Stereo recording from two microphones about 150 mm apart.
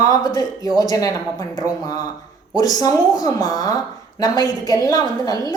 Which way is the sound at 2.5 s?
25° left (ahead or behind).